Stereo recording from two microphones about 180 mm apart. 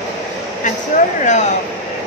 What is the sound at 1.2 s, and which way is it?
Speech, 40° left (ahead or behind).